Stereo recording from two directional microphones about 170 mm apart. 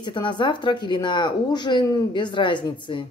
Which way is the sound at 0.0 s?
25° left (ahead or behind).